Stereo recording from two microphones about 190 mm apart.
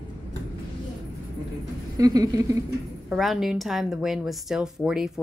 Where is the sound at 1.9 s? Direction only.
20° right (ahead or behind).